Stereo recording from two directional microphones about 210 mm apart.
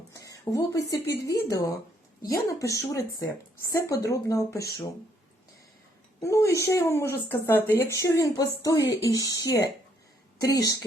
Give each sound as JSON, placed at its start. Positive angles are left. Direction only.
{"t": 0.1, "sound": "a sound", "side_deg": 15}
{"t": 1.2, "sound": "speech", "side_deg": 15}
{"t": 6.1, "sound": "speech", "side_deg": 15}